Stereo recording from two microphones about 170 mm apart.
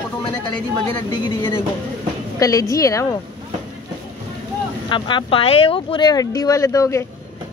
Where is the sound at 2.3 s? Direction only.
20° left (ahead or behind).